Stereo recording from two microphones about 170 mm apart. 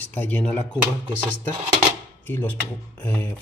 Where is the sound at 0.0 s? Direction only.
10° left (ahead or behind).